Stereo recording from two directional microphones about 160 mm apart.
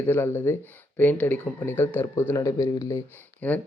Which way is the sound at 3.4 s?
10° left (ahead or behind).